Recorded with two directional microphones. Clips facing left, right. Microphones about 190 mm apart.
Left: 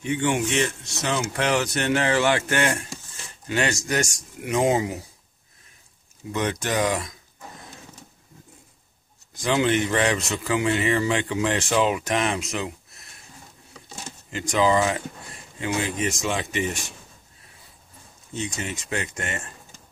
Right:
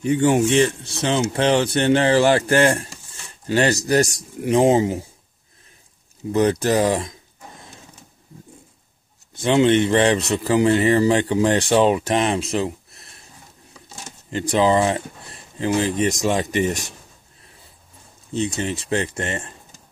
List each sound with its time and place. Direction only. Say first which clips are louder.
0.0 s speech: right 7 dB; 40° right (ahead or behind)
6.3 s speech: right 7 dB; 35° right (ahead or behind)
9.3 s speech: right 6 dB; 25° right (ahead or behind)
14.3 s speech: right 3 dB; 30° right (ahead or behind)
18.3 s speech: right 7 dB; 35° right (ahead or behind)